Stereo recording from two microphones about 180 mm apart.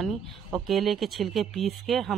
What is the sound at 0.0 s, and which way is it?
A woman's voice, centre (ahead or behind).